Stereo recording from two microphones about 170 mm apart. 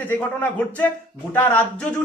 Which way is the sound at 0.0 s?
10° left (ahead or behind).